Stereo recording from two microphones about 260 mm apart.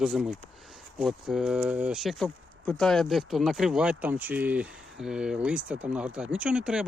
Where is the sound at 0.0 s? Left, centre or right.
Centre.